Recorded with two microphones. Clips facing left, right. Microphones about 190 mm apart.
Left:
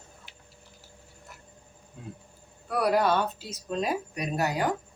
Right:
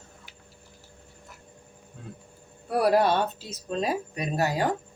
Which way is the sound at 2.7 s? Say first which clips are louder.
Right 2 dB; 25° right (ahead or behind).